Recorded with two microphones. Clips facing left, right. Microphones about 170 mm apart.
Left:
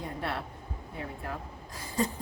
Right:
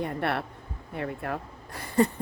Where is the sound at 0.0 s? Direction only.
65° right (ahead or behind).